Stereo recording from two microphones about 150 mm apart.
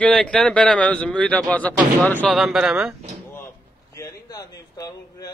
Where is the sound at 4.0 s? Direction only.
25° left (ahead or behind).